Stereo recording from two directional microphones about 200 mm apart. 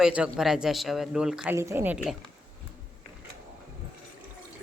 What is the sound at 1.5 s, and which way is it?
Speech, 15° right (ahead or behind).